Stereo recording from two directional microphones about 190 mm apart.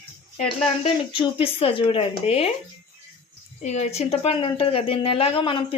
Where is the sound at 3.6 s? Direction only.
35° left (ahead or behind).